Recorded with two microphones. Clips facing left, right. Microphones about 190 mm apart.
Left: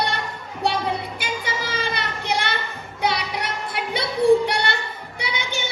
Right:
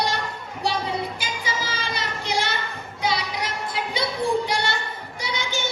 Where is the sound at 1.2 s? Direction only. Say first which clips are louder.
Left 2 dB; 60° left (ahead or behind).